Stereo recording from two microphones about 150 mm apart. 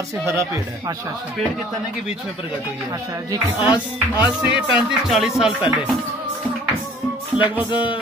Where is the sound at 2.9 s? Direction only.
25° right (ahead or behind).